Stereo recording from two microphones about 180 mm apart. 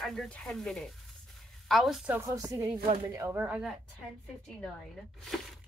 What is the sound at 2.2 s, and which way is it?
Speech, 20° right (ahead or behind).